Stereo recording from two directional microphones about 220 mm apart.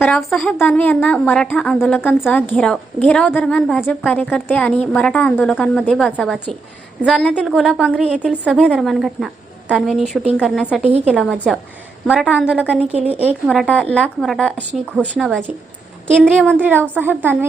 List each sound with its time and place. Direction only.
0.0 s a woman's voice: centre (ahead or behind)
12.8 s speech: 30° right (ahead or behind)
13.2 s a woman's voice: 5° left (ahead or behind)
16.6 s a woman's voice: 10° right (ahead or behind)